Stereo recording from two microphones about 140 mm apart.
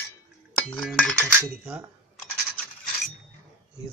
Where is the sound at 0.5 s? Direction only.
5° left (ahead or behind).